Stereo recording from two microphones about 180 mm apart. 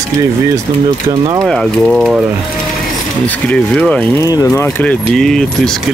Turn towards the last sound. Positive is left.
turn(degrees=5)  # may be behind; listen again after turning